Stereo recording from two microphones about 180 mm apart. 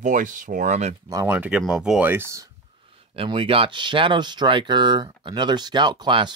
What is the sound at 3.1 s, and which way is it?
Speech, 30° right (ahead or behind).